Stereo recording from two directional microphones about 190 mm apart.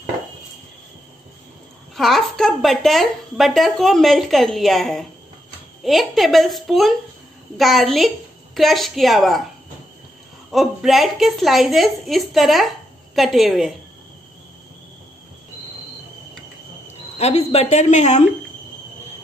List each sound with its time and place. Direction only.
2.0 s a woman's voice: centre (ahead or behind)
10.5 s a woman's voice: centre (ahead or behind)
17.2 s speech: 35° left (ahead or behind)